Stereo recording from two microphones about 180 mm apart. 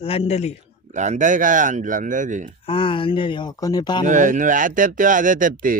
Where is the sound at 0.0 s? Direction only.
35° left (ahead or behind).